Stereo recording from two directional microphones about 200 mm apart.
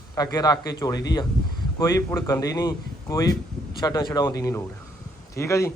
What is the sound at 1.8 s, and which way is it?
Speech, 15° left (ahead or behind).